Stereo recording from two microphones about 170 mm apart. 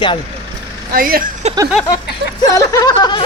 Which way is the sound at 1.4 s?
40° right (ahead or behind).